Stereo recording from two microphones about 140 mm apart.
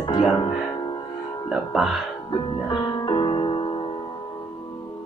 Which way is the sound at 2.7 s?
35° left (ahead or behind).